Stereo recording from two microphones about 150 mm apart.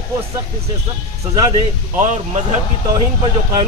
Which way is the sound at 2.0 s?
50° right (ahead or behind).